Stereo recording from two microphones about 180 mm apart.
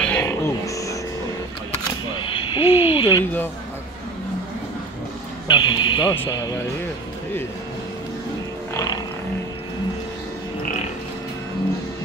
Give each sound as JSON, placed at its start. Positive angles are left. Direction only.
{"t": 0.0, "sound": "music", "side_deg": 10}
{"t": 2.2, "sound": "hoot", "side_deg": 30}
{"t": 5.5, "sound": "speech", "side_deg": 25}
{"t": 8.7, "sound": "music", "side_deg": 20}